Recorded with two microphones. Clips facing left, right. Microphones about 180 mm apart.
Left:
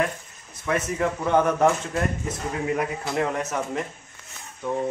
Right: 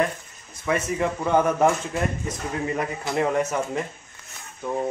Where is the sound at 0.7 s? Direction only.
Centre (ahead or behind).